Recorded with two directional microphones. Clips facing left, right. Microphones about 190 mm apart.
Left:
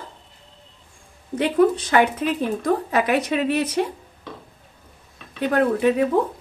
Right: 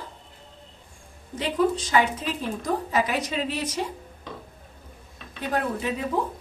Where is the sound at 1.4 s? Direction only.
60° left (ahead or behind).